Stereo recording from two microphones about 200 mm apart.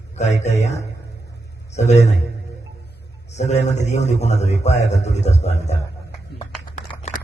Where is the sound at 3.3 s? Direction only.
35° left (ahead or behind).